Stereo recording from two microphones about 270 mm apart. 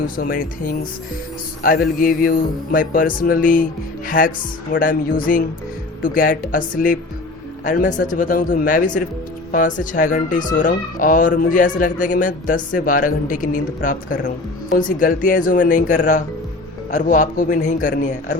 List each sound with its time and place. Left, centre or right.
0.2 s speech: left